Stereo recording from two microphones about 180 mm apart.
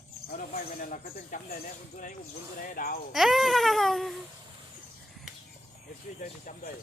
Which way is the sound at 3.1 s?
Centre (ahead or behind).